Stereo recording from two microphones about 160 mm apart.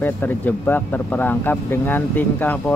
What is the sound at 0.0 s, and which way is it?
Speech, 10° left (ahead or behind).